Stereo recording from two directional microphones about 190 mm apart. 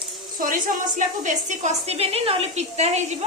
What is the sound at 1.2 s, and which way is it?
A woman's voice, 40° right (ahead or behind).